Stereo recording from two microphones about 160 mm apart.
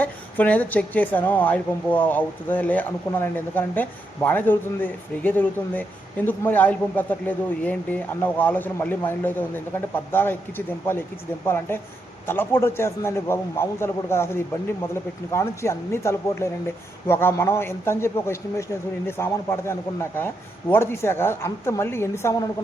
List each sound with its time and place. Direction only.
0.0 s speech: 10° left (ahead or behind)